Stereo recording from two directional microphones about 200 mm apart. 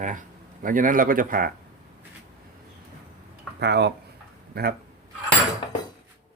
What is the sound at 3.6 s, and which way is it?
Speech, 55° right (ahead or behind).